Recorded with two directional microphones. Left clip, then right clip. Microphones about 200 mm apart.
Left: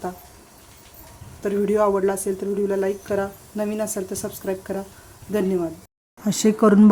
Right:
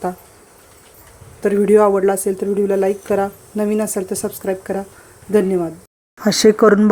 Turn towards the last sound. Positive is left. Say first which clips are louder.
# right 7 dB
turn(degrees=-15)  # may be behind; listen again after turning